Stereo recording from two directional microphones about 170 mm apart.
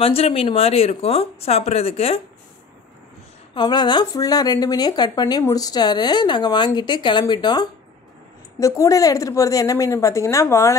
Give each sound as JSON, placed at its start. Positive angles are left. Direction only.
{"t": 0.0, "sound": "speech", "side_deg": 35}
{"t": 3.5, "sound": "speech", "side_deg": 25}